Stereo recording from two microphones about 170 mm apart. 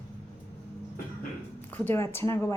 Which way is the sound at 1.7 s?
15° left (ahead or behind).